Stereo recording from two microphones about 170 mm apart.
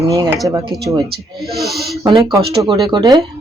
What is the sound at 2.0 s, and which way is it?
Speech, 25° right (ahead or behind).